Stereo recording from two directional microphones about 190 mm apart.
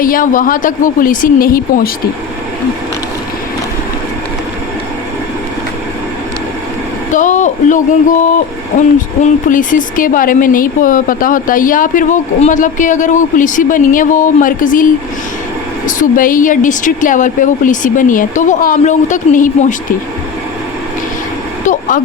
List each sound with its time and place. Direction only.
0.0 s speech: 45° left (ahead or behind)
7.1 s speech: 40° left (ahead or behind)
15.9 s speech: 45° left (ahead or behind)
21.7 s vehicle: 45° left (ahead or behind)